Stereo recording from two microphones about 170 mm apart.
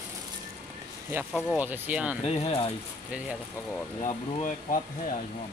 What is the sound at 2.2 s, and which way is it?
Speech, 35° left (ahead or behind).